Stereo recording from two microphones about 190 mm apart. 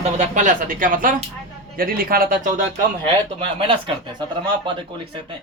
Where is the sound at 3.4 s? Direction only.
25° right (ahead or behind).